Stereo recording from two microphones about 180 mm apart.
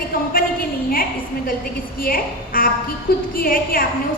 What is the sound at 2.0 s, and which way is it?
A woman's voice, 50° left (ahead or behind).